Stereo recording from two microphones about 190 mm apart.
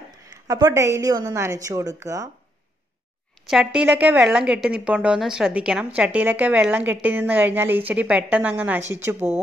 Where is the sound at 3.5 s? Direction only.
5° right (ahead or behind).